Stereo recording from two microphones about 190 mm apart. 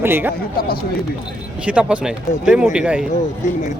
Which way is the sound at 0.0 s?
10° right (ahead or behind).